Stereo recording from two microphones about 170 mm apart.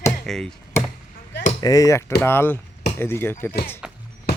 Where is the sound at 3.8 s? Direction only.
5° right (ahead or behind).